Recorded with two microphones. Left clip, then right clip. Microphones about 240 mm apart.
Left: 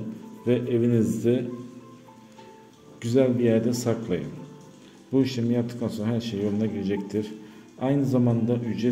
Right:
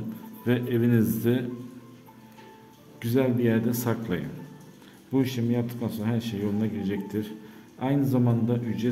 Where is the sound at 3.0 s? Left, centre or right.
Centre.